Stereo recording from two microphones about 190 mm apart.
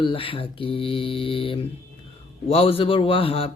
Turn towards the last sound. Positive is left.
turn(degrees=30)  # may be behind; listen again after turning